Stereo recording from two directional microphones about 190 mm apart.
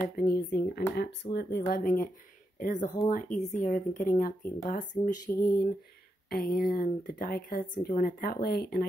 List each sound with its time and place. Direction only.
0.1 s speech: 55° left (ahead or behind)
1.7 s a woman's voice: 45° left (ahead or behind)